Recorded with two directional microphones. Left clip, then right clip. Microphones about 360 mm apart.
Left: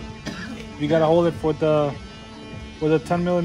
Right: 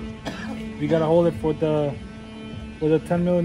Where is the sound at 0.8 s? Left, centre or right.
Centre.